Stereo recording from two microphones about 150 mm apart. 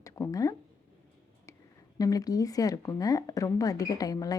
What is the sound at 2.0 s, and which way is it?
Speech, 25° left (ahead or behind).